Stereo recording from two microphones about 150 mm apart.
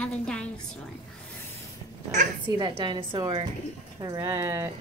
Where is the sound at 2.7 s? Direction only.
35° right (ahead or behind).